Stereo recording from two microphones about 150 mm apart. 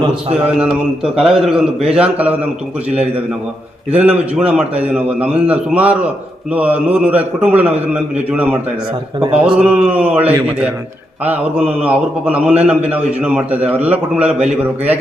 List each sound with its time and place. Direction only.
0.4 s a man's voice: 5° right (ahead or behind)
3.9 s a man's voice: 10° right (ahead or behind)
9.4 s a man's voice: 10° right (ahead or behind)